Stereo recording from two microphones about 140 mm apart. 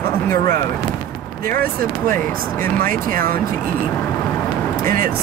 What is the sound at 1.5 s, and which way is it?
Speech, 80° right.